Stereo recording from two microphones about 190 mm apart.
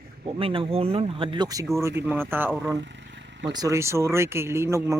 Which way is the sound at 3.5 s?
20° right (ahead or behind).